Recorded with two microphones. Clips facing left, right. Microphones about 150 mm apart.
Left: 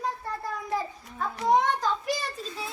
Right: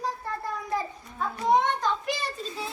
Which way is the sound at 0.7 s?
Centre (ahead or behind).